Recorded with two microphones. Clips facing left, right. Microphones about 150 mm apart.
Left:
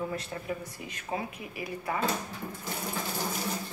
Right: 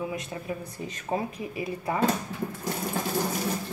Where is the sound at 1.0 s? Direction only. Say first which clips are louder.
Right 5 dB; 30° right (ahead or behind).